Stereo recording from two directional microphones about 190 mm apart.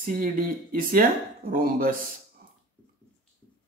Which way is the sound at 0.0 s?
45° right (ahead or behind).